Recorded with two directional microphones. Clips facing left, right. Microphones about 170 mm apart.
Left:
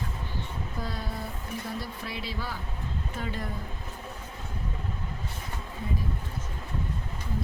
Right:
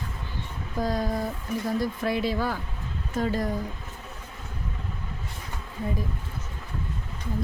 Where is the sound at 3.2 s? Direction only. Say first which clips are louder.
Right 10 dB; 40° right (ahead or behind).